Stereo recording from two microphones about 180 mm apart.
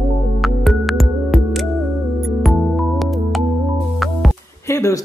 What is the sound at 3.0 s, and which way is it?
Music, centre (ahead or behind).